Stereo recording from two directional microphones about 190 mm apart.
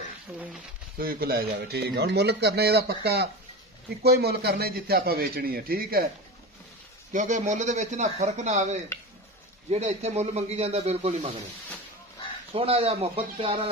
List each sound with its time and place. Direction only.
0.3 s speech: 5° right (ahead or behind)
0.9 s a man's voice: 50° right (ahead or behind)
7.1 s a man's voice: 40° right (ahead or behind)
12.5 s a man's voice: 30° right (ahead or behind)